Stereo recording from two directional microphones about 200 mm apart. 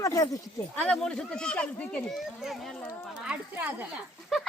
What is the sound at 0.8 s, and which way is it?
A child's voice, 5° left (ahead or behind).